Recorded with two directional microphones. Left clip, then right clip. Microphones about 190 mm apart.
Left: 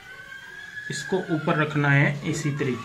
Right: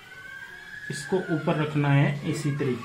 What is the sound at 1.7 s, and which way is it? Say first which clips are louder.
Speech: left 4 dB; 25° right (ahead or behind).